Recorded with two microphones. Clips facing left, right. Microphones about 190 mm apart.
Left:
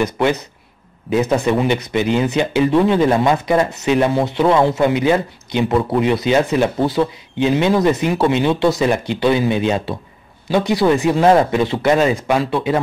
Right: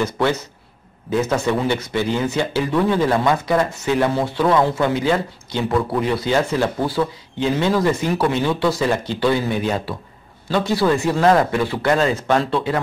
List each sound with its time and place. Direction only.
0.0 s speech: 15° left (ahead or behind)